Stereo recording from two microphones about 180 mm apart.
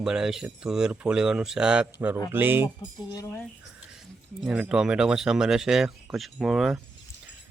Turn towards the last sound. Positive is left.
turn(degrees=0)  # may be behind; listen again after turning